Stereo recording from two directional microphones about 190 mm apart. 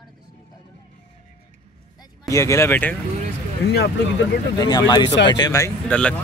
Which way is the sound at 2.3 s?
15° left (ahead or behind).